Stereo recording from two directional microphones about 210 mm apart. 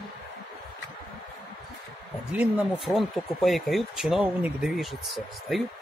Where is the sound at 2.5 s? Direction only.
Centre (ahead or behind).